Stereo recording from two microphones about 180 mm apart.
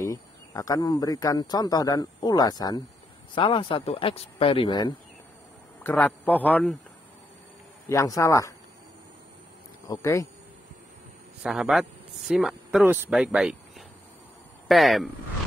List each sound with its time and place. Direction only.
0.0 s speech: 15° left (ahead or behind)
5.9 s a man's voice: 10° left (ahead or behind)
7.8 s a man's voice: 15° left (ahead or behind)
9.8 s a man's voice: 20° left (ahead or behind)
11.4 s speech: centre (ahead or behind)